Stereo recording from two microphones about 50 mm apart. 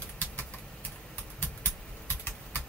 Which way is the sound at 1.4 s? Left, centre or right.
Left.